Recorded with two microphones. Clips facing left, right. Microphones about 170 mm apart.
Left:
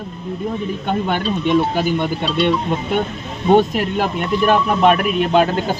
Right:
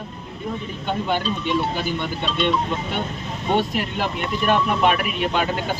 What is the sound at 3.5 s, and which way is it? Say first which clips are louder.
A man's voice: left 8 dB; 45° left (ahead or behind).